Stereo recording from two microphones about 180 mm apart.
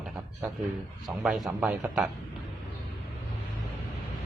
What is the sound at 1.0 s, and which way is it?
Speech, centre (ahead or behind).